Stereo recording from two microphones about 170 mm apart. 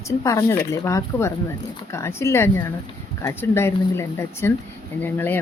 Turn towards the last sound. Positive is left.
turn(degrees=10)  # may be behind; listen again after turning